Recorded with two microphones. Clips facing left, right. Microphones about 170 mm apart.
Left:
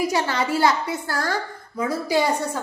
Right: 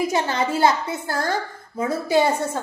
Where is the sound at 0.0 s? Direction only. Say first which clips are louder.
Right 1 dB; 20° right (ahead or behind).